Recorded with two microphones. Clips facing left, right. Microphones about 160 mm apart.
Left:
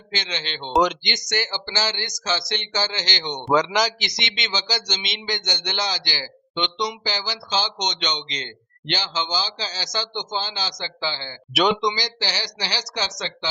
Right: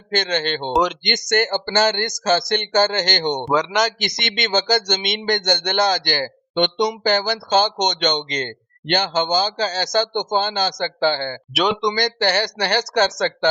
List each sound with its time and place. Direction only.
0.1 s speech: 50° right (ahead or behind)
0.7 s a man's voice: centre (ahead or behind)
1.0 s speech: 55° right (ahead or behind)
3.4 s a man's voice: centre (ahead or behind)
4.0 s speech: 50° right (ahead or behind)
11.5 s a man's voice: centre (ahead or behind)
11.9 s a woman's voice: 55° right (ahead or behind)